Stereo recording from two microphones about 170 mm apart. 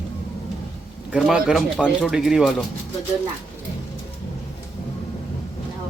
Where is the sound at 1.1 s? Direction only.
5° right (ahead or behind).